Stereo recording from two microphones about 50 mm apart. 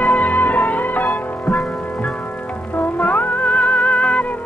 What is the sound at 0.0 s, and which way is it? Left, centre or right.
Music, left.